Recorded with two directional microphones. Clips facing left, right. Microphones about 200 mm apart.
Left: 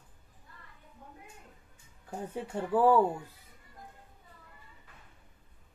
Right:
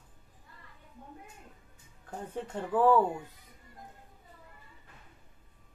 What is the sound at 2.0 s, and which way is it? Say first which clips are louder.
Speech: left 1 dB; 10° left (ahead or behind).